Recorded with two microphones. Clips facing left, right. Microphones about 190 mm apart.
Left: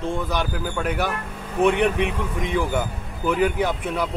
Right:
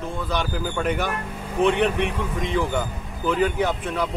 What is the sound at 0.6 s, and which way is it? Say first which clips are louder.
Speech: even; 5° left (ahead or behind).